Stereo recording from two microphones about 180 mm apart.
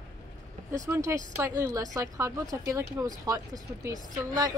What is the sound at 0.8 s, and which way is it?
Speech, 15° right (ahead or behind).